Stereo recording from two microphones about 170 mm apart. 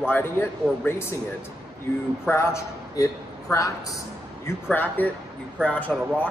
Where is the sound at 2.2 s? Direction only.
15° left (ahead or behind).